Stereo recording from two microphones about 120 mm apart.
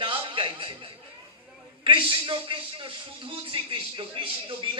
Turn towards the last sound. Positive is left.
turn(degrees=-50)  # may be behind; listen again after turning